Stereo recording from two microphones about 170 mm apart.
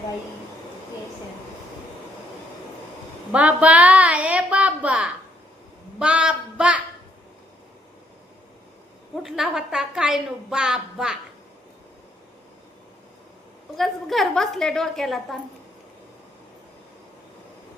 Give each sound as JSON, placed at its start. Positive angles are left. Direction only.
{"t": 3.3, "sound": "a woman's voice", "side_deg": -10}
{"t": 9.2, "sound": "a woman's voice", "side_deg": -5}
{"t": 13.7, "sound": "a woman's voice", "side_deg": 0}